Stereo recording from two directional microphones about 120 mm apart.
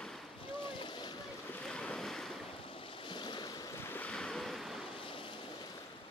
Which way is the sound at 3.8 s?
15° left (ahead or behind).